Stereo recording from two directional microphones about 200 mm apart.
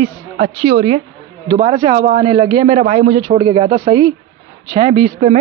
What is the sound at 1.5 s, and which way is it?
A man's voice, 35° right (ahead or behind).